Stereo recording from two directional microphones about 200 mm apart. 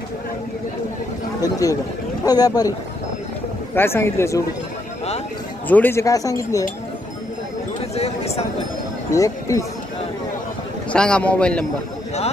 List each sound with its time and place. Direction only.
1.4 s speech: 15° left (ahead or behind)
3.7 s speech: 10° left (ahead or behind)
5.7 s speech: 10° left (ahead or behind)
7.9 s speech: 30° left (ahead or behind)
9.1 s speech: 15° left (ahead or behind)
10.9 s a man's voice: 5° left (ahead or behind)